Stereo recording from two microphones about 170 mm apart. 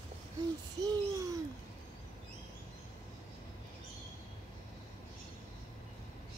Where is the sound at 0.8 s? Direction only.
20° right (ahead or behind).